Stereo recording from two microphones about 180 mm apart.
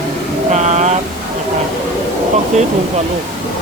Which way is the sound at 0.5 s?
40° right (ahead or behind).